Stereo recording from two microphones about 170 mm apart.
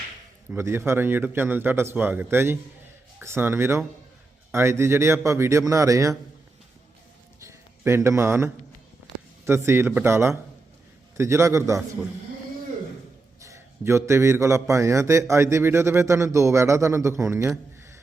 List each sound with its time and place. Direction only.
0.5 s a man's voice: 15° right (ahead or behind)
7.4 s a sound: 15° right (ahead or behind)
9.4 s a man's voice: 15° right (ahead or behind)
13.4 s a man's voice: 15° right (ahead or behind)